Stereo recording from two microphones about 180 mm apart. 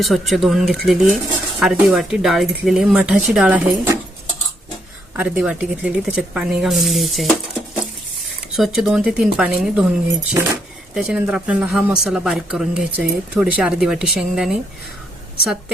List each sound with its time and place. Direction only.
0.0 s speech: centre (ahead or behind)
5.1 s speech: 10° right (ahead or behind)
8.5 s speech: centre (ahead or behind)
10.1 s speech: 15° right (ahead or behind)
10.9 s speech: 5° right (ahead or behind)